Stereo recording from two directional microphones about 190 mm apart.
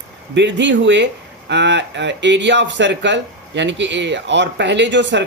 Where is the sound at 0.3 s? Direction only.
70° right (ahead or behind).